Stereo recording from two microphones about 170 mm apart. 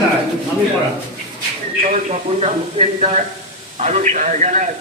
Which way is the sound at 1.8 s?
45° right (ahead or behind).